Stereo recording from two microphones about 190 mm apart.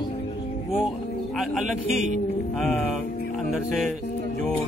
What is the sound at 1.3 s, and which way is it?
Speech, centre (ahead or behind).